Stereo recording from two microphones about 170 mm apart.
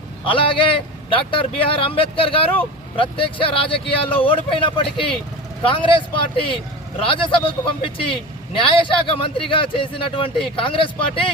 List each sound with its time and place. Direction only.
0.3 s speech: 30° left (ahead or behind)